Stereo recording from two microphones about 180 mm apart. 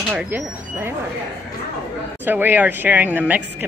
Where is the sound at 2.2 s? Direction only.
10° right (ahead or behind).